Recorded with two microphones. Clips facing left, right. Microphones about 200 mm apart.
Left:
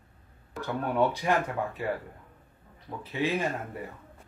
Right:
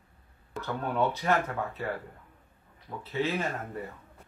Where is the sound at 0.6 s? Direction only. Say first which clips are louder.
Left 2 dB; 15° left (ahead or behind).